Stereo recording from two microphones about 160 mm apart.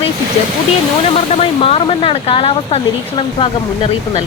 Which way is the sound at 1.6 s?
35° left (ahead or behind).